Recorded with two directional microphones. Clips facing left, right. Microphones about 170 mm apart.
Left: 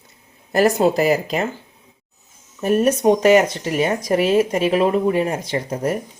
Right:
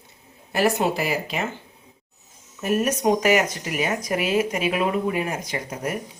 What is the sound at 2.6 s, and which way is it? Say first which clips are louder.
Speech: left 6 dB; 35° left (ahead or behind).